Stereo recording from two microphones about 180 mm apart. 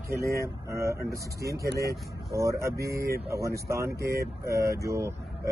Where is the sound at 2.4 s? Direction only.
15° right (ahead or behind).